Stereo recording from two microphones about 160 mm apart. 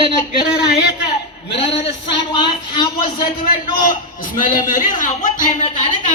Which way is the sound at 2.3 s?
30° left (ahead or behind).